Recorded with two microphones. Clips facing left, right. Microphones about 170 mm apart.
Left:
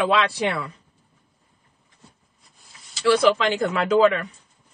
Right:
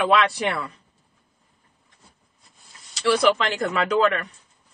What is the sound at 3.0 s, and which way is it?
Speech, centre (ahead or behind).